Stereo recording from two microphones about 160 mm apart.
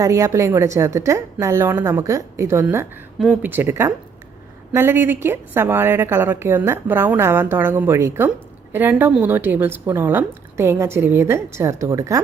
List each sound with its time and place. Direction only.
0.0 s a woman's voice: 20° right (ahead or behind)
3.2 s speech: centre (ahead or behind)
3.5 s a woman's voice: 15° right (ahead or behind)